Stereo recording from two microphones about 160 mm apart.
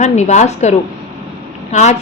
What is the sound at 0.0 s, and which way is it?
Speech, 45° left (ahead or behind).